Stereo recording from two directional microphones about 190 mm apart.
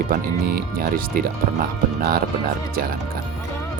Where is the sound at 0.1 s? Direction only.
50° right (ahead or behind).